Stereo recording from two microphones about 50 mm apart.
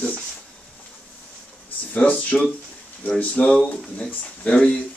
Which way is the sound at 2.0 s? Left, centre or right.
Left.